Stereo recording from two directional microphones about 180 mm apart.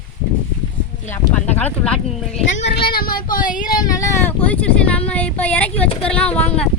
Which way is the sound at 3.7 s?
20° left (ahead or behind).